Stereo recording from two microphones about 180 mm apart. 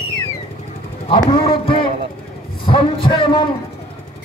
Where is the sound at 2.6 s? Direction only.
30° left (ahead or behind).